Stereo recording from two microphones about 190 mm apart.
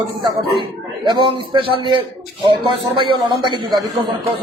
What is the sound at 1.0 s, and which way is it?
Speech, 25° right (ahead or behind).